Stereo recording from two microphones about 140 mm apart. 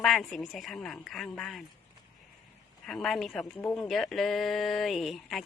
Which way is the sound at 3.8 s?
Centre (ahead or behind).